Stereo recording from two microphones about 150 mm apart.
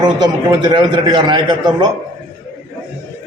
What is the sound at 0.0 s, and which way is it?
A man's voice, 30° right (ahead or behind).